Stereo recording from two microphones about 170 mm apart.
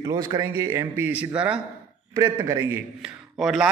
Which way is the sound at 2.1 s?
20° right (ahead or behind).